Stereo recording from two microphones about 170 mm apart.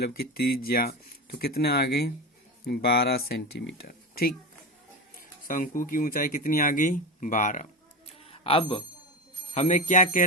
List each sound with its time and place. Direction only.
0.0 s speech: 65° left (ahead or behind)
5.5 s speech: 55° left (ahead or behind); by 8.8 s 35° left (ahead or behind)
9.6 s speech: 45° left (ahead or behind)